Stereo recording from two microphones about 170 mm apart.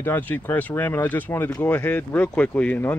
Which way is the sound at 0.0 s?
10° left (ahead or behind).